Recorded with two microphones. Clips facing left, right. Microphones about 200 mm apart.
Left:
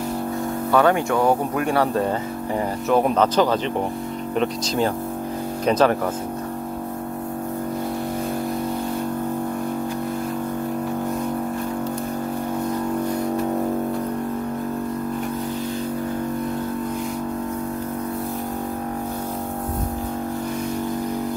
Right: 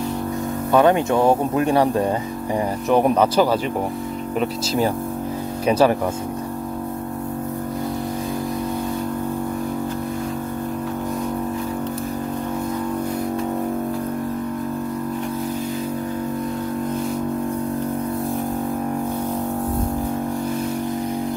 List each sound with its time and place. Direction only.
0.7 s speech: 20° right (ahead or behind)